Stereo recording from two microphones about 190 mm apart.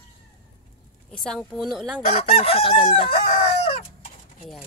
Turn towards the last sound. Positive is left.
turn(degrees=40)  # may be behind; listen again after turning